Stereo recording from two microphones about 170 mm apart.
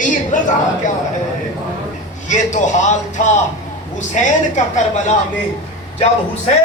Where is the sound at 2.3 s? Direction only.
45° left (ahead or behind).